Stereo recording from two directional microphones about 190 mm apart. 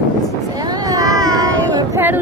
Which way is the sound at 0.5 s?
20° right (ahead or behind).